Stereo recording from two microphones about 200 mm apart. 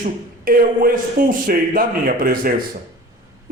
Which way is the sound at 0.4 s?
45° right (ahead or behind).